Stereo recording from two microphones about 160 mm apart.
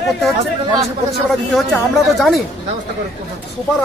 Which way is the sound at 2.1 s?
Centre (ahead or behind).